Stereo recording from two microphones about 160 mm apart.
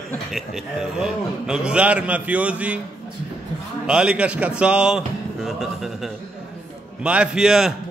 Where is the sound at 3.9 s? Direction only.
5° right (ahead or behind).